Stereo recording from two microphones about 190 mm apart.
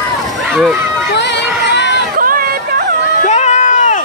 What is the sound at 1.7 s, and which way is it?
Crowd, 65° left (ahead or behind).